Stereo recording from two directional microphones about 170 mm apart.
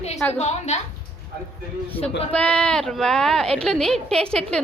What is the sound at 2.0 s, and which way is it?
Speech, 10° left (ahead or behind).